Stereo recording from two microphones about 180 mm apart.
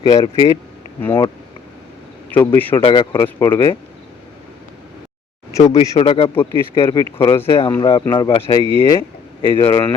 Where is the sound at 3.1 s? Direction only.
15° left (ahead or behind).